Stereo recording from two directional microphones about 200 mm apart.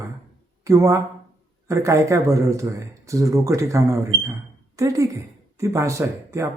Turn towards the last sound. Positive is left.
turn(degrees=-15)  # may be behind; listen again after turning